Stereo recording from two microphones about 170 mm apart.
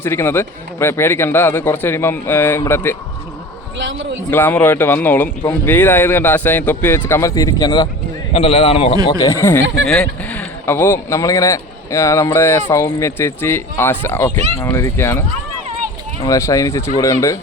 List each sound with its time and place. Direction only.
0.0 s speech: 15° left (ahead or behind)
3.8 s a man's voice: 90° right
4.3 s speech: 15° left (ahead or behind)
8.3 s a man's voice: 35° left (ahead or behind)
9.0 s speech: 20° left (ahead or behind)
9.8 s speech: 5° left (ahead or behind)
16.2 s speech: 20° left (ahead or behind)